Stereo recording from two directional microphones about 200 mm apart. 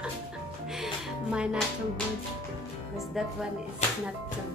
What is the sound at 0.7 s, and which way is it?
Music, 5° right (ahead or behind).